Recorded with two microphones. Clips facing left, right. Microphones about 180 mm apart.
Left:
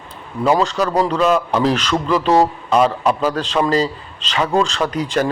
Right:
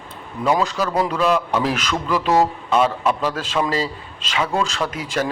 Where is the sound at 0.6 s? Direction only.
5° right (ahead or behind).